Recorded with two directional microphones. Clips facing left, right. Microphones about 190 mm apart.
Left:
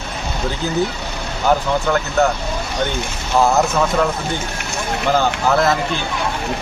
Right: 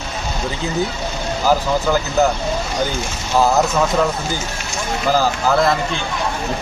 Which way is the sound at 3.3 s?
Centre (ahead or behind).